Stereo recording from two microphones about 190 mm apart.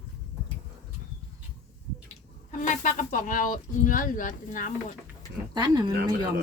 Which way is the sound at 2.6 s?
40° left (ahead or behind).